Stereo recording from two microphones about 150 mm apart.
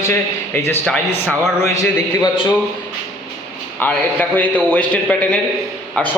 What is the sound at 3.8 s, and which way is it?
A man's voice, 10° left (ahead or behind).